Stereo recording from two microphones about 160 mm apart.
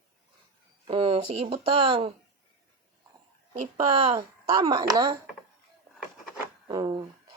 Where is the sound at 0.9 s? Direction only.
35° right (ahead or behind).